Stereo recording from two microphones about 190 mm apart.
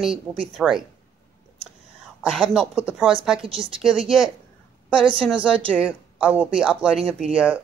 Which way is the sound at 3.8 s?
5° right (ahead or behind).